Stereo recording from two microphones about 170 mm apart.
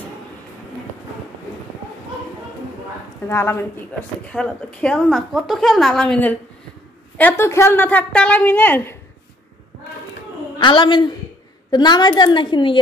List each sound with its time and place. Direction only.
3.3 s a woman's voice: 15° left (ahead or behind)
10.6 s a woman's voice: 25° left (ahead or behind)